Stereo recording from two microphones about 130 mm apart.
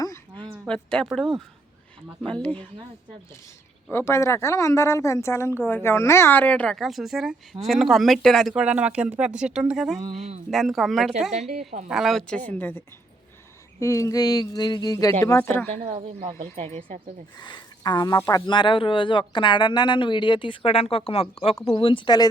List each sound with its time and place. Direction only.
0.7 s speech: 5° left (ahead or behind)
3.9 s speech: 20° left (ahead or behind); by 10.0 s 5° right (ahead or behind)
10.1 s speech: 55° right (ahead or behind)
10.5 s speech: centre (ahead or behind)
11.3 s speech: 60° right (ahead or behind)
11.9 s speech: centre (ahead or behind); by 12.8 s 15° left (ahead or behind)
13.7 s speech: 25° left (ahead or behind)
16.6 s speech: 65° right (ahead or behind)
17.3 s speech: 35° left (ahead or behind)